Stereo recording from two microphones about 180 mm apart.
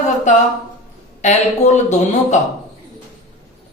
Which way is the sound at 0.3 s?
45° left (ahead or behind).